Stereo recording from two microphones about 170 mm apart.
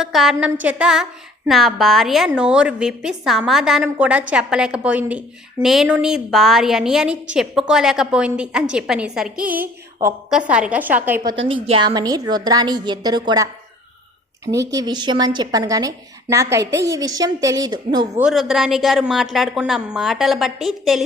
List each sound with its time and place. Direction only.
0.0 s a woman's voice: centre (ahead or behind)
11.3 s a woman's voice: 35° right (ahead or behind)
18.2 s a woman's voice: 5° right (ahead or behind)